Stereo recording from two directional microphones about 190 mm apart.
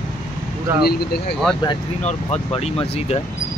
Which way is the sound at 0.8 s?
55° left (ahead or behind).